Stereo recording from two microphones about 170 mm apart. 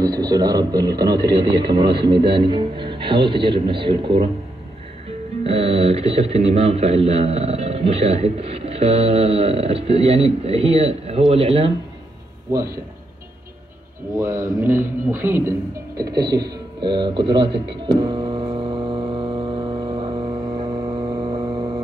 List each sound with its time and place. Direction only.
0.0 s a man's voice: 25° right (ahead or behind)
5.4 s speech: 35° right (ahead or behind)
14.1 s a man's voice: 15° right (ahead or behind)
16.8 s a man's voice: 25° right (ahead or behind)
17.8 s mains hum: 30° right (ahead or behind)
20.5 s vehicle: 30° right (ahead or behind)